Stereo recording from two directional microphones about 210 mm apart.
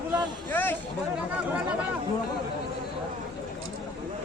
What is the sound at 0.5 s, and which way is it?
Speech, 10° left (ahead or behind).